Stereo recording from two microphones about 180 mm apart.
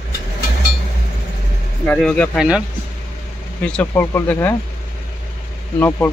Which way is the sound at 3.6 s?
10° left (ahead or behind).